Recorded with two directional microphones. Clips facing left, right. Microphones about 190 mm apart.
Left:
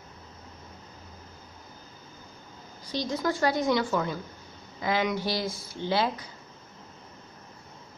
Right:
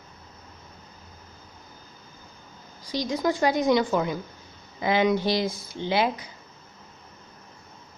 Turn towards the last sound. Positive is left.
turn(degrees=-15)  # may be behind; listen again after turning